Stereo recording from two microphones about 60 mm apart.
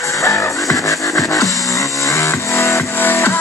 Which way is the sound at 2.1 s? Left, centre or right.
Left.